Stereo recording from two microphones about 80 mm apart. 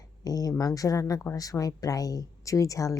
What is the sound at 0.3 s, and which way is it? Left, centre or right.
Speech, left.